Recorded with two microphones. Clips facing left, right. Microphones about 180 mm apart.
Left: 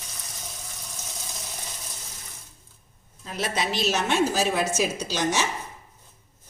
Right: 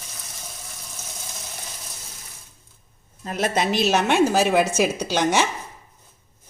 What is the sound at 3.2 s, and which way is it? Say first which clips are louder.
A woman's voice: right 5 dB; 55° right (ahead or behind).